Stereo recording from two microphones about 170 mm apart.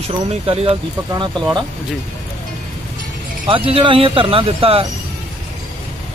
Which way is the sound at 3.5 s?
30° right (ahead or behind).